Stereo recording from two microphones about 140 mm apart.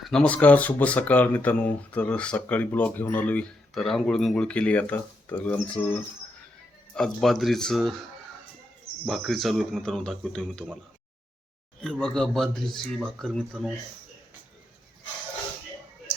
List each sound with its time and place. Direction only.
0.0 s speech: 5° left (ahead or behind)
6.9 s speech: centre (ahead or behind)
9.0 s speech: centre (ahead or behind)
11.8 s speech: 5° left (ahead or behind)